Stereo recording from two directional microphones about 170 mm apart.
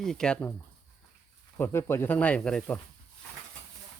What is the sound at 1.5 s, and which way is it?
Speech, 15° left (ahead or behind).